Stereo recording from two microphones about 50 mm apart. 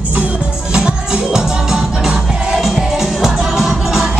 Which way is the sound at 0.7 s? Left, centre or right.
Centre.